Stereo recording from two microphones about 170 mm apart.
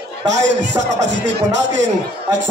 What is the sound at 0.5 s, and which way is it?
Speech, 90° right.